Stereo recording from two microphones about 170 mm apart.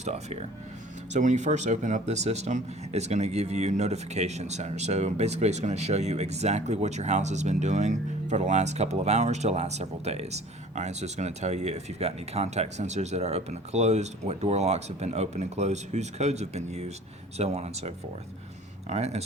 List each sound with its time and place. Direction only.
0.0 s speech: 40° right (ahead or behind)